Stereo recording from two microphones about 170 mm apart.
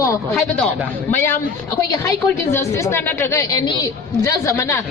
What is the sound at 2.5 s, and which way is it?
A woman's voice, 15° left (ahead or behind).